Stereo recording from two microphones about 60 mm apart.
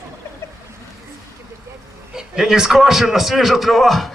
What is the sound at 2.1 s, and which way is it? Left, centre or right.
A man's voice, centre.